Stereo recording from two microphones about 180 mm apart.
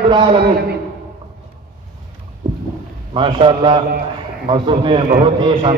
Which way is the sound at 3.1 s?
30° right (ahead or behind).